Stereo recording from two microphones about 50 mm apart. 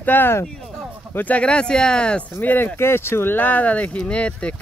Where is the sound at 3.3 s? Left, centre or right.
Left.